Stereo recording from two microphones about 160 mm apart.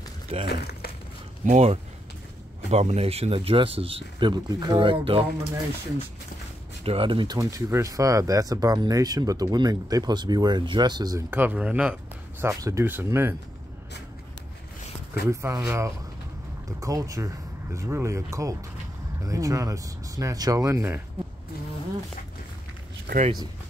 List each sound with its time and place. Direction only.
0.5 s speech: 90° left
1.4 s speech: 45° right (ahead or behind)
6.8 s speech: 35° right (ahead or behind); by 13.4 s 15° right (ahead or behind)
15.2 s speech: 15° right (ahead or behind)
23.1 s a sound: 90° right